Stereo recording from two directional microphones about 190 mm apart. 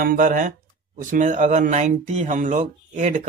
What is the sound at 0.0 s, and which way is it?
Speech, 45° right (ahead or behind).